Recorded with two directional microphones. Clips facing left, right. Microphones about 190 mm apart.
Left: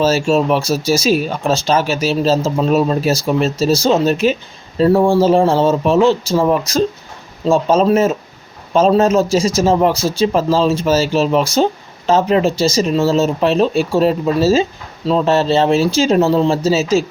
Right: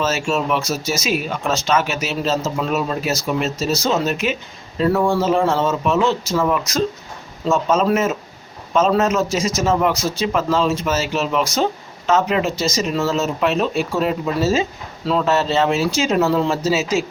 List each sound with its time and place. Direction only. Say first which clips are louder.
0.0 s speech: left 7 dB; 35° left (ahead or behind)